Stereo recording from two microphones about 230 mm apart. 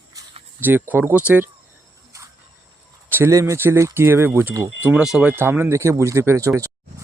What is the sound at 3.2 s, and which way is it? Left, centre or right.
Speech, centre.